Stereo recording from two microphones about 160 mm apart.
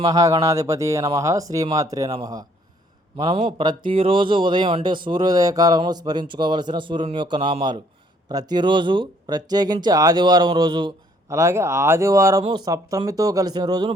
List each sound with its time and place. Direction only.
0.1 s speech: 20° right (ahead or behind)
3.2 s speech: 35° right (ahead or behind)